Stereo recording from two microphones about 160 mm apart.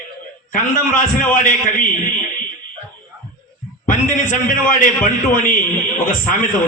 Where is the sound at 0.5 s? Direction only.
60° left (ahead or behind).